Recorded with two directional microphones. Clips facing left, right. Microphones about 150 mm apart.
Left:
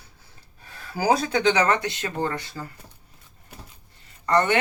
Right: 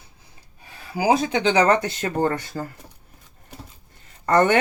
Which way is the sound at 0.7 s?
15° right (ahead or behind).